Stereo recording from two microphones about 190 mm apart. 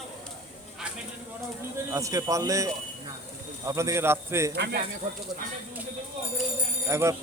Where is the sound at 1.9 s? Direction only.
15° right (ahead or behind).